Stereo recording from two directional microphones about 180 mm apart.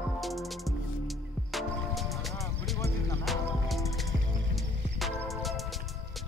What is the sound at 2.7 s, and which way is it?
Music, 15° left (ahead or behind).